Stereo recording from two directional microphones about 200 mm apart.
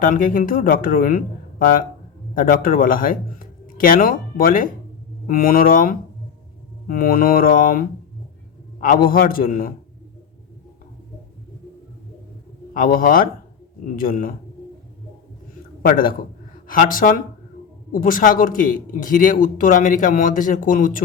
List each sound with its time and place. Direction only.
0.0 s speech: 45° left (ahead or behind)
12.7 s speech: 45° left (ahead or behind)
15.8 s speech: 45° left (ahead or behind)